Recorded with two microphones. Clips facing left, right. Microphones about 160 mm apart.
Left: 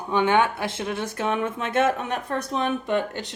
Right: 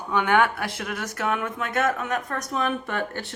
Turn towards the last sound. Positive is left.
turn(degrees=15)  # may be behind; listen again after turning